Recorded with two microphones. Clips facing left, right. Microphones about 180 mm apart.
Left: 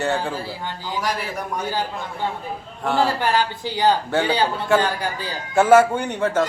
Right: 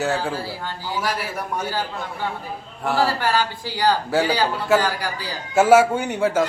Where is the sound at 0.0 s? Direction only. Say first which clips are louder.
Even; 5° right (ahead or behind).